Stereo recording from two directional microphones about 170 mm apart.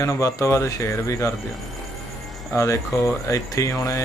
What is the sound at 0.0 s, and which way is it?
Speech, 20° left (ahead or behind).